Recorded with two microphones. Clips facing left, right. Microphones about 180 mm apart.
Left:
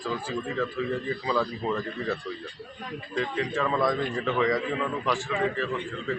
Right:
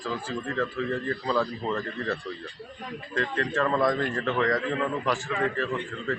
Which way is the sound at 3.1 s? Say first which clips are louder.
Right 1 dB; 5° left (ahead or behind).